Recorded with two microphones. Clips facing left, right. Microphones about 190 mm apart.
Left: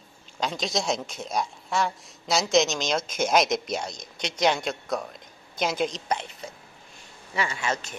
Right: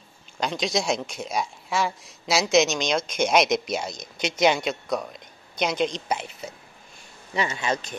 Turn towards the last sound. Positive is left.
turn(degrees=-20)  # may be behind; listen again after turning